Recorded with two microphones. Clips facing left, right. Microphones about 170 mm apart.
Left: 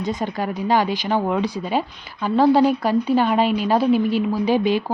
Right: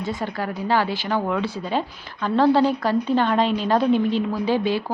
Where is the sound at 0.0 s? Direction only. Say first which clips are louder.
Left 3 dB; 20° left (ahead or behind).